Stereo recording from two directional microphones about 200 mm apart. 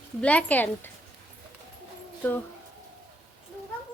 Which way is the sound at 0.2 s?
5° left (ahead or behind).